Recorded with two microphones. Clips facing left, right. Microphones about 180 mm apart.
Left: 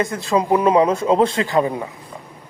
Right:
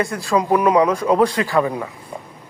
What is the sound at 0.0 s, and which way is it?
Speech, 20° left (ahead or behind).